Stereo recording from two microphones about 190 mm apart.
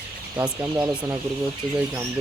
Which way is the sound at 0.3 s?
10° right (ahead or behind).